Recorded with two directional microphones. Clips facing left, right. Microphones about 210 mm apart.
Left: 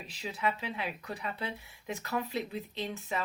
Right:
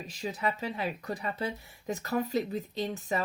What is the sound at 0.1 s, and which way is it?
Speech, 45° right (ahead or behind).